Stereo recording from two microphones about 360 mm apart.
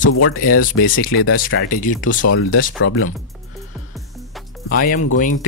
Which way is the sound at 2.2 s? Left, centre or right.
Left.